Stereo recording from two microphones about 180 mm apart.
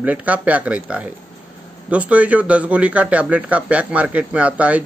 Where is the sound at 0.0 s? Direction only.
10° right (ahead or behind).